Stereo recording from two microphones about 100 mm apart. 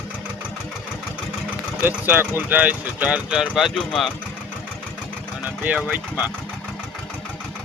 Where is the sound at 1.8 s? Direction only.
20° right (ahead or behind); by 4.1 s centre (ahead or behind).